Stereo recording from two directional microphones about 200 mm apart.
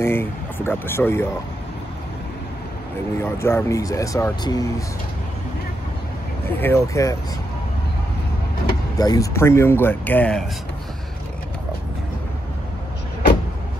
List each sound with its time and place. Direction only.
0.0 s speech: 10° left (ahead or behind)
3.2 s speech: 15° left (ahead or behind)
6.6 s speech: 15° left (ahead or behind)
8.9 s speech: 20° left (ahead or behind)